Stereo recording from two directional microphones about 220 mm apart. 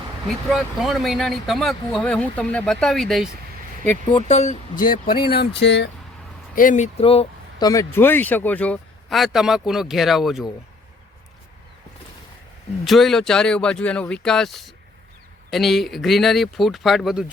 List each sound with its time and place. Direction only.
0.3 s speech: centre (ahead or behind)
4.1 s speech: 30° left (ahead or behind)
5.1 s speech: 45° left (ahead or behind)
6.6 s speech: 35° left (ahead or behind)
7.7 s speech: 10° left (ahead or behind)
12.8 s speech: centre (ahead or behind)